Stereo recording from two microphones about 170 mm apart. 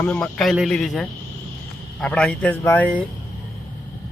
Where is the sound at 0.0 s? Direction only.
5° left (ahead or behind).